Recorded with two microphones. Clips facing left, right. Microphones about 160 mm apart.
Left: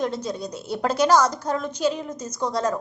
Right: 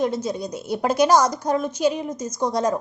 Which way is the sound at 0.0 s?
10° right (ahead or behind).